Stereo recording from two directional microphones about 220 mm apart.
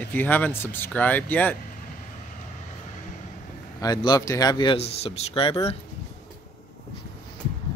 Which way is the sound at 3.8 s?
15° left (ahead or behind).